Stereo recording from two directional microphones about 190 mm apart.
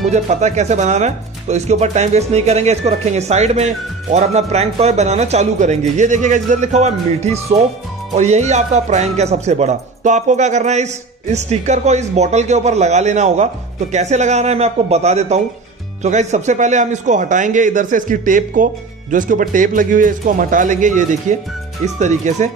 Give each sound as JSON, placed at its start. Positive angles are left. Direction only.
{"t": 0.1, "sound": "speech", "side_deg": -35}